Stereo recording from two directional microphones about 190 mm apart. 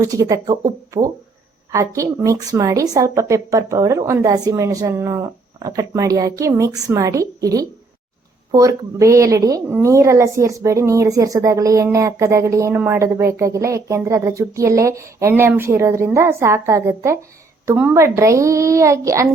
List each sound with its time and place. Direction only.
0.0 s a woman's voice: 20° right (ahead or behind)